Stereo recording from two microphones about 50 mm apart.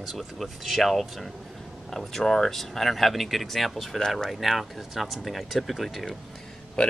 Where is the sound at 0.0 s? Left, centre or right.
Centre.